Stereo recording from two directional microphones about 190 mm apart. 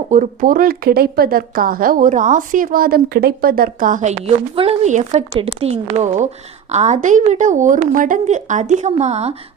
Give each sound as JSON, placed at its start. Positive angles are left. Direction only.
{"t": 0.1, "sound": "speech", "side_deg": -45}
{"t": 4.5, "sound": "a woman's voice", "side_deg": -30}